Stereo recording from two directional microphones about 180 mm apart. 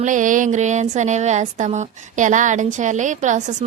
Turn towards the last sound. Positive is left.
turn(degrees=-40)  # may be behind; listen again after turning